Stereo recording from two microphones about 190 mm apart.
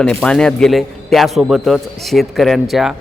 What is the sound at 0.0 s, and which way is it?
Speech, 5° left (ahead or behind).